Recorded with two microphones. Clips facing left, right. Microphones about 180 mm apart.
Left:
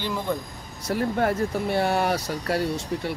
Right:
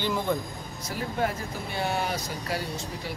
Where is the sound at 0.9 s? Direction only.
65° left (ahead or behind).